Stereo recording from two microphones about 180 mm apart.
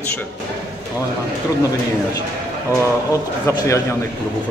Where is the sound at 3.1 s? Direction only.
15° left (ahead or behind).